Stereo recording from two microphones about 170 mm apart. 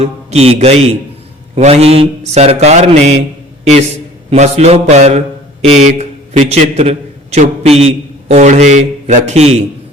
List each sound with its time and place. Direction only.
0.0 s mantra: 40° right (ahead or behind)
3.6 s a man's voice: 40° right (ahead or behind)
4.3 s mantra: 40° right (ahead or behind)
5.6 s a man's voice: 40° right (ahead or behind)